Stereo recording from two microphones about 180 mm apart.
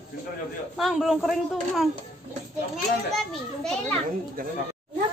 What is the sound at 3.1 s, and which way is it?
Speech, 5° left (ahead or behind).